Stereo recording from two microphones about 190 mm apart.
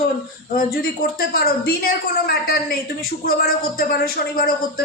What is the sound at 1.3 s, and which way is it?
Speech, 55° left (ahead or behind).